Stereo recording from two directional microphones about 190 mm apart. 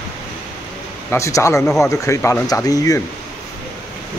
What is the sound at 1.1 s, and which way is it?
Speech, 15° left (ahead or behind).